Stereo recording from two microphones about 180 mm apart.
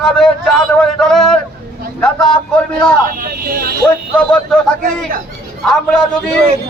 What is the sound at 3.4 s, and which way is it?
Speech, 55° right (ahead or behind).